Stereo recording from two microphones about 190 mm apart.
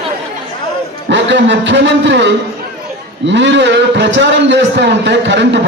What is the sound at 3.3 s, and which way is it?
A man's voice, 70° right (ahead or behind).